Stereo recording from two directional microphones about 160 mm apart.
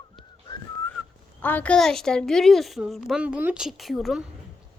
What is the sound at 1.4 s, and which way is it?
A woman's voice, 10° left (ahead or behind).